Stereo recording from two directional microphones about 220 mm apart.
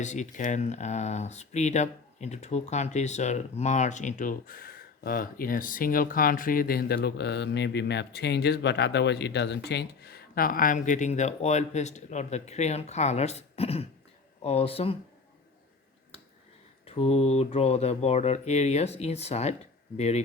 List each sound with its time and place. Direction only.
0.0 s speech: 35° left (ahead or behind)
16.8 s speech: 25° left (ahead or behind)